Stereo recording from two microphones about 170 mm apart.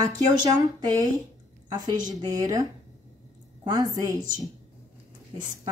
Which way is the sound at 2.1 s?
25° right (ahead or behind).